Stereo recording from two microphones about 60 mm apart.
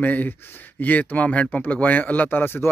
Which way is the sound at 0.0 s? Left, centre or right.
Left.